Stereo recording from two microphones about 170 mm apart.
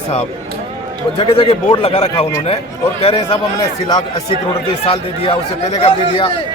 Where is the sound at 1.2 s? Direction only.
35° left (ahead or behind).